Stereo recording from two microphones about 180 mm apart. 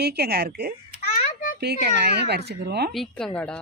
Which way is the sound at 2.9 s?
5° left (ahead or behind).